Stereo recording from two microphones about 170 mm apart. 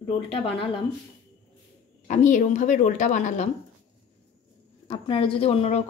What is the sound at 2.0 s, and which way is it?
Speech, 45° left (ahead or behind).